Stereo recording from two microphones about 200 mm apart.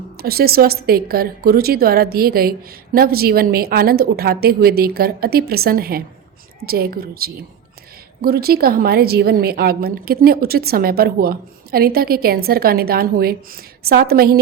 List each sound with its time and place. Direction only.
0.2 s a woman's voice: 50° right (ahead or behind)